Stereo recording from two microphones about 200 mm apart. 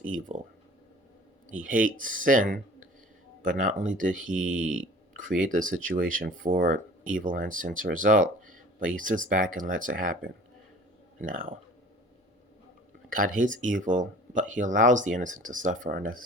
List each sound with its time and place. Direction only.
0.1 s speech: 40° right (ahead or behind)
1.5 s speech: 40° right (ahead or behind)
13.1 s speech: 40° right (ahead or behind)